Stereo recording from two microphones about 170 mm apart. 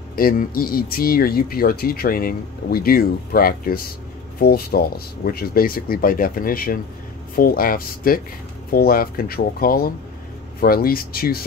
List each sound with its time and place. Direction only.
0.1 s speech: 60° left (ahead or behind)